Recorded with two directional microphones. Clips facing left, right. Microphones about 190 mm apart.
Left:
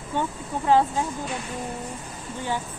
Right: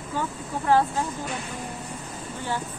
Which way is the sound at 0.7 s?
15° left (ahead or behind).